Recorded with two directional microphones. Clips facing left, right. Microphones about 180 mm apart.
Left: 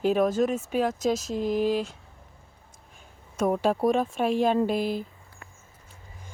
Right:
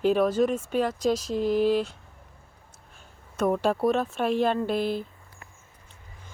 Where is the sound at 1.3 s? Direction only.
45° left (ahead or behind).